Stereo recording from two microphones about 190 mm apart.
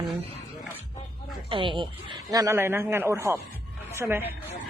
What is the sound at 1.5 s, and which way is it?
A man's voice, 25° right (ahead or behind).